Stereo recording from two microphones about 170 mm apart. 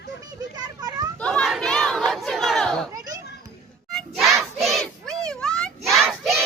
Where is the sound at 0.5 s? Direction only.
25° right (ahead or behind).